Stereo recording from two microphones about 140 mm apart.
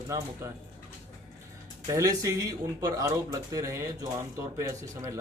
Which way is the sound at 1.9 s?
25° right (ahead or behind).